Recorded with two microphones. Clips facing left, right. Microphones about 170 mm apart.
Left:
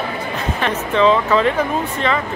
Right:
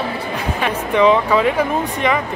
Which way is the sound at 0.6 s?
15° right (ahead or behind).